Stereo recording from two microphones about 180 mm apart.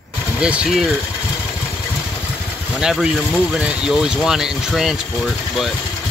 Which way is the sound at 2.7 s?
5° right (ahead or behind).